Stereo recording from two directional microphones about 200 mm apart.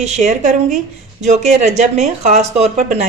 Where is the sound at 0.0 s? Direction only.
35° right (ahead or behind).